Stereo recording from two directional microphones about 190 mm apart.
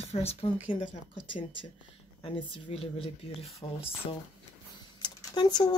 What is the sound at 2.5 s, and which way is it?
Speech, 30° left (ahead or behind).